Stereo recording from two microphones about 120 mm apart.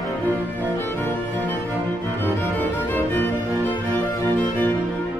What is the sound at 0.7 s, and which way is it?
Music, 20° left (ahead or behind).